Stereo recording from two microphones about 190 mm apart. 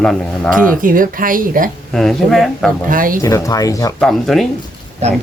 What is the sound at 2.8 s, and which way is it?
Speech, 45° right (ahead or behind).